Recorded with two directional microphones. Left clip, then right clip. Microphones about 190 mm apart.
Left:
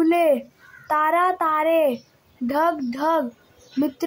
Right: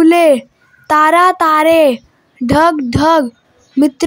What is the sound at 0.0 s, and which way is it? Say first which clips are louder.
A child's voice: right 10 dB; 45° right (ahead or behind).